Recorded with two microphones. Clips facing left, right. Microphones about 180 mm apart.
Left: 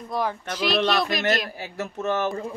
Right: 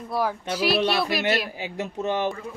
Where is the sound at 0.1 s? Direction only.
10° right (ahead or behind).